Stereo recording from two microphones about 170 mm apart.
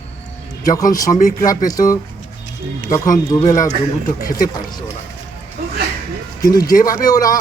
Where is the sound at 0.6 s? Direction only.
20° left (ahead or behind).